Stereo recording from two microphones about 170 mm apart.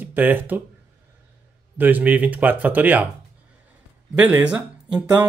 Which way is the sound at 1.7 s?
10° right (ahead or behind).